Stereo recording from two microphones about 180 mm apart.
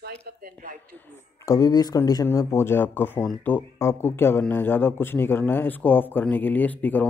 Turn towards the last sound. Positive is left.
turn(degrees=10)  # may be behind; listen again after turning